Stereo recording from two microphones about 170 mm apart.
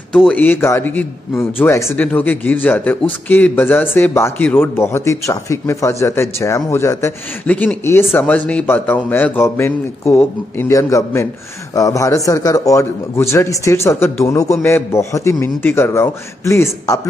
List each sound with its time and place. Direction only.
0.1 s a man's voice: 5° left (ahead or behind)